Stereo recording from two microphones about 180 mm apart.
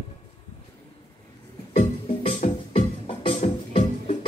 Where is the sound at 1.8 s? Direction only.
30° left (ahead or behind).